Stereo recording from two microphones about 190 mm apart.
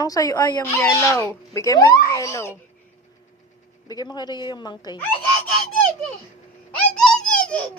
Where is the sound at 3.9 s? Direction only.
20° left (ahead or behind).